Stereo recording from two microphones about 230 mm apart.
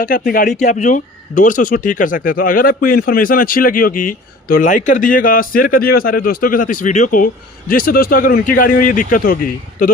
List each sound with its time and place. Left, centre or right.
0.0 s speech: left